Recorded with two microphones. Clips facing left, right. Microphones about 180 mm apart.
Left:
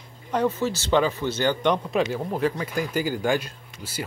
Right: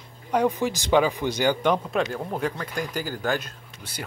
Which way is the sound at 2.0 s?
5° left (ahead or behind).